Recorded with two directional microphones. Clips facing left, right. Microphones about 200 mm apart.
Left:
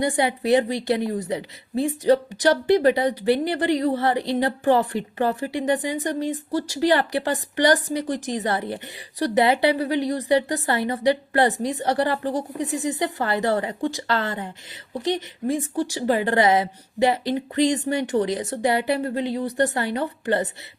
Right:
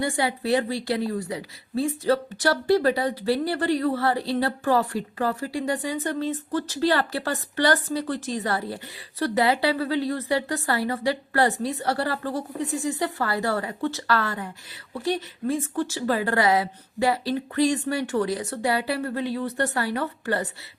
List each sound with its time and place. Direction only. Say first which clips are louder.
0.0 s speech: left 3 dB; 20° left (ahead or behind)